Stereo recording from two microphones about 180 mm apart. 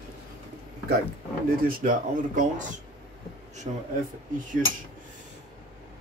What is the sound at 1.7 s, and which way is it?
Speech, 50° right (ahead or behind).